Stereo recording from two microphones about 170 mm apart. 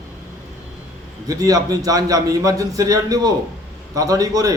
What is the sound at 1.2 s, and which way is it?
Speech, 20° right (ahead or behind).